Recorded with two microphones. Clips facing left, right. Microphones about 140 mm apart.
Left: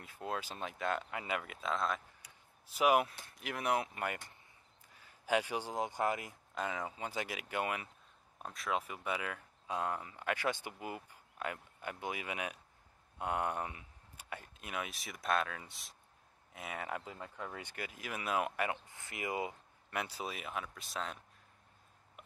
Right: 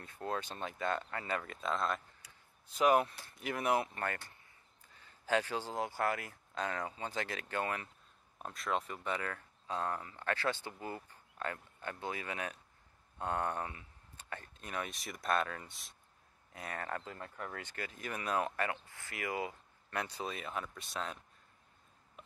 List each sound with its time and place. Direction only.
0.0 s speech: 5° left (ahead or behind)
4.0 s speech: 15° left (ahead or behind)
6.5 s speech: 5° left (ahead or behind)
8.4 s speech: centre (ahead or behind); by 19.5 s 20° left (ahead or behind)
19.9 s speech: 10° left (ahead or behind)